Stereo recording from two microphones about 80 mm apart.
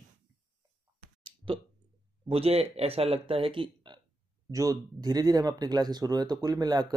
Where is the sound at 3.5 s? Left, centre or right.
Right.